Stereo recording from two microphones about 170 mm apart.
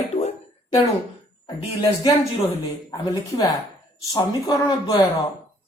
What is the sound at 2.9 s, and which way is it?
Speech, 20° left (ahead or behind).